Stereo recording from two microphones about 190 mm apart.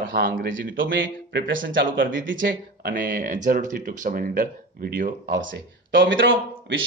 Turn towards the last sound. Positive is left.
turn(degrees=-80)